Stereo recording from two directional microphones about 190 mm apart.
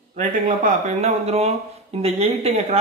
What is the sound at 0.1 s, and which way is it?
Speech, 40° right (ahead or behind).